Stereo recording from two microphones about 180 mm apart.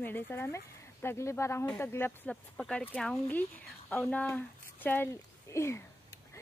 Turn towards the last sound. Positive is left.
turn(degrees=15)  # may be behind; listen again after turning